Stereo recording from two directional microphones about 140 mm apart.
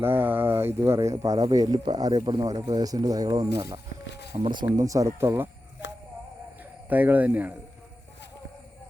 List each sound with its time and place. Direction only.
0.0 s speech: 15° right (ahead or behind)
4.3 s speech: 40° right (ahead or behind)
4.8 s speech: 25° right (ahead or behind)
6.8 s speech: 15° right (ahead or behind)